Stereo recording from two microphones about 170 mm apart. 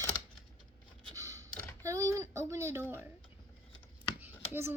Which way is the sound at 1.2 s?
20° right (ahead or behind).